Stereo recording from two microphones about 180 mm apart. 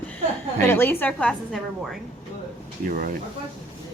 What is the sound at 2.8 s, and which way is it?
Speech, 50° right (ahead or behind).